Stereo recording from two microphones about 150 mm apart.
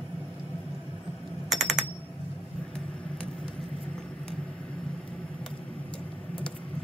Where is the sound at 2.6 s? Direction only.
5° left (ahead or behind).